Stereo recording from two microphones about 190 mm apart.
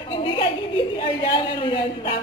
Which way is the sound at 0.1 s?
25° left (ahead or behind).